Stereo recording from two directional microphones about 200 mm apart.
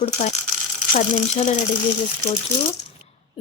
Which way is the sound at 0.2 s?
35° left (ahead or behind).